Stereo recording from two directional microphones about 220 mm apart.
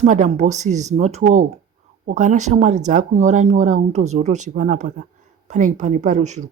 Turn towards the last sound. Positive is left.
turn(degrees=-35)  # may be behind; listen again after turning